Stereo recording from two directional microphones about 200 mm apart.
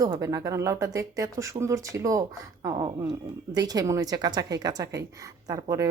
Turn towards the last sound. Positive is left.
turn(degrees=-15)  # may be behind; listen again after turning